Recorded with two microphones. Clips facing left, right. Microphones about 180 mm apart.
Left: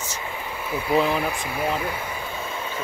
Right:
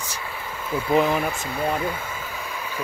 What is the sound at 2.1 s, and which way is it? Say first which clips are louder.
Vehicle: left 2 dB; 20° left (ahead or behind).